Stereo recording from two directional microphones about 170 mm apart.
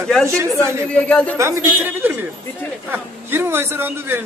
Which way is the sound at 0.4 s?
15° right (ahead or behind).